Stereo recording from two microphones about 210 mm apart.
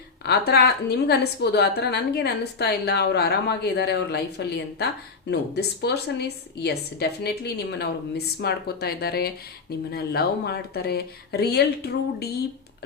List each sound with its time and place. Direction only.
0.2 s a woman's voice: 50° left (ahead or behind)